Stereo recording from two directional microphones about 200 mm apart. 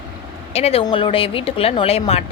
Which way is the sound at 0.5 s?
30° left (ahead or behind).